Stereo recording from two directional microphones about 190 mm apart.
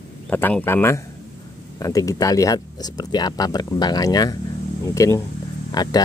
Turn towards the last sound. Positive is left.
turn(degrees=20)  # may be behind; listen again after turning